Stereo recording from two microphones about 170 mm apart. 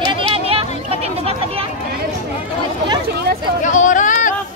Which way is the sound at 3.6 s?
50° left (ahead or behind).